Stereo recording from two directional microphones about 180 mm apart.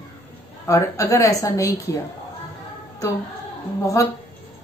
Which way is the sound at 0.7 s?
15° left (ahead or behind).